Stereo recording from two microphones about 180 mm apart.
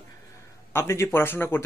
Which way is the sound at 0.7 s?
15° left (ahead or behind).